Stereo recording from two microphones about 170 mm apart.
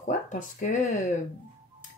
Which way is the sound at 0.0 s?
50° left (ahead or behind).